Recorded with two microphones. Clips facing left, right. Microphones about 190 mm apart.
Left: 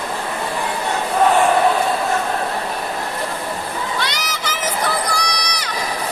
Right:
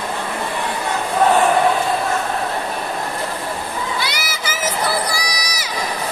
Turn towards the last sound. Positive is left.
turn(degrees=-5)  # may be behind; listen again after turning